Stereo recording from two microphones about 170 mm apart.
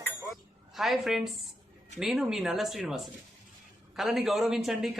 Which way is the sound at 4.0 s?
Centre (ahead or behind).